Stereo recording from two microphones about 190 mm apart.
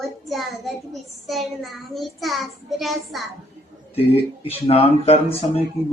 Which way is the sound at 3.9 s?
30° left (ahead or behind).